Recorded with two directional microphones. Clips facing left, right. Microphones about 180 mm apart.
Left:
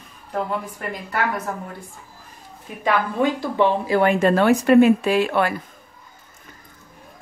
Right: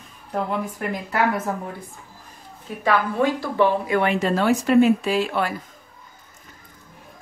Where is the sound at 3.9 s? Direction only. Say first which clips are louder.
Left 3 dB; 40° left (ahead or behind).